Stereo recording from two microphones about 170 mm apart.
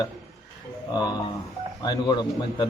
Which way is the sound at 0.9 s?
20° left (ahead or behind).